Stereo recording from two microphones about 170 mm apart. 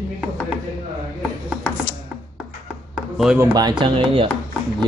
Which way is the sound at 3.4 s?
25° right (ahead or behind).